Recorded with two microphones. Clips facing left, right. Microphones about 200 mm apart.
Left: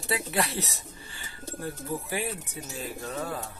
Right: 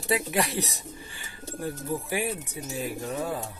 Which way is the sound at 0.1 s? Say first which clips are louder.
Right 3 dB; 15° right (ahead or behind).